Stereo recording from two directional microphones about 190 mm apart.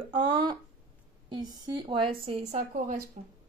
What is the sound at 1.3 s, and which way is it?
A woman's voice, 25° right (ahead or behind).